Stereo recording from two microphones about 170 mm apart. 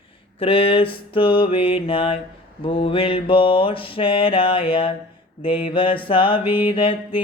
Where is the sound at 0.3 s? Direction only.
30° left (ahead or behind).